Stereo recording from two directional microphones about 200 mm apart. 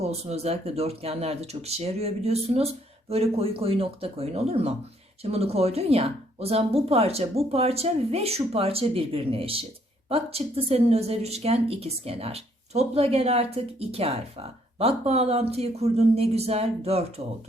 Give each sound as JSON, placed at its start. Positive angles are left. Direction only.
{"t": 0.0, "sound": "speech", "side_deg": -30}